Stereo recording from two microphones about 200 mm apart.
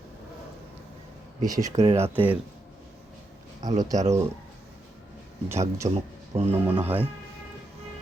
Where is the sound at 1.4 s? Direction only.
20° right (ahead or behind).